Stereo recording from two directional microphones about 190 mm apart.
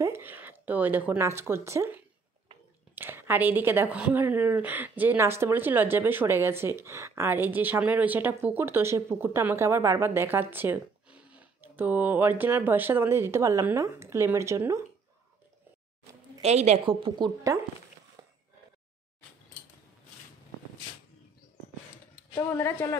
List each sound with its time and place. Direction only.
0.0 s a woman's voice: 10° right (ahead or behind)
16.3 s a woman's voice: 35° right (ahead or behind)
21.9 s a sound: 15° left (ahead or behind)